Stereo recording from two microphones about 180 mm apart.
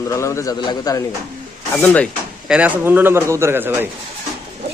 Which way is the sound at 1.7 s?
10° left (ahead or behind).